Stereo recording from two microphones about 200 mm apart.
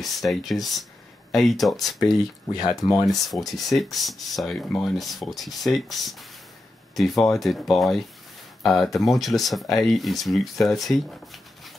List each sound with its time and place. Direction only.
0.0 s speech: centre (ahead or behind)
2.0 s speech: 20° left (ahead or behind)
3.3 s speech: centre (ahead or behind)